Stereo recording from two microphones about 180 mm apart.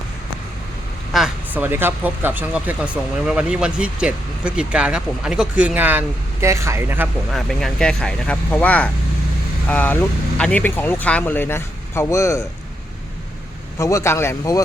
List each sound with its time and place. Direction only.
1.1 s speech: 5° right (ahead or behind)
7.3 s speech: centre (ahead or behind)
13.7 s speech: 15° left (ahead or behind)